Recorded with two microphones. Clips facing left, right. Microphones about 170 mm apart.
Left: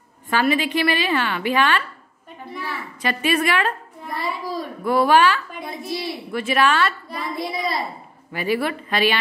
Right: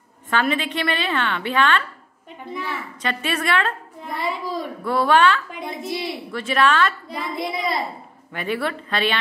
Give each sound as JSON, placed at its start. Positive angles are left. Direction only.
{"t": 0.3, "sound": "speech", "side_deg": 5}
{"t": 3.0, "sound": "speech", "side_deg": 10}
{"t": 4.1, "sound": "a child's voice", "side_deg": -20}
{"t": 4.8, "sound": "speech", "side_deg": 10}
{"t": 5.6, "sound": "a child's voice", "side_deg": -20}
{"t": 6.3, "sound": "speech", "side_deg": 10}
{"t": 7.3, "sound": "a child's voice", "side_deg": -20}
{"t": 8.3, "sound": "speech", "side_deg": 5}